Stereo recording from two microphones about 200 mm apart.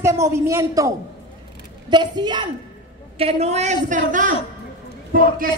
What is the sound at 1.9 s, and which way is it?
A child's voice, 20° right (ahead or behind).